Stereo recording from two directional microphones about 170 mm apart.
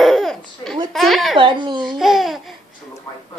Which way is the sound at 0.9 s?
Centre (ahead or behind).